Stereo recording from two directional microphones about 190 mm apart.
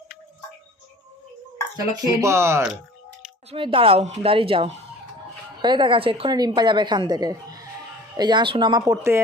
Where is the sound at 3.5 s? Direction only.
30° right (ahead or behind).